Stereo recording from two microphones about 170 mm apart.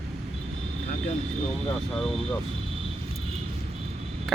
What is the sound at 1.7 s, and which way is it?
Speech, 5° left (ahead or behind).